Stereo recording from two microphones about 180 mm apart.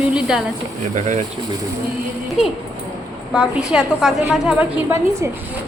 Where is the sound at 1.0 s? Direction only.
45° right (ahead or behind).